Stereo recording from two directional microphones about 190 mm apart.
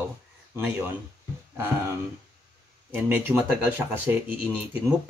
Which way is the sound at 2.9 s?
10° right (ahead or behind).